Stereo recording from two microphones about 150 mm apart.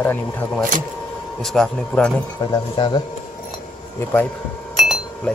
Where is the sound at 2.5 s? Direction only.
30° left (ahead or behind).